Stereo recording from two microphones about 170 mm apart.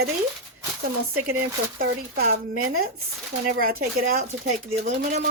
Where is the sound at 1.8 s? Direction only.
60° right (ahead or behind).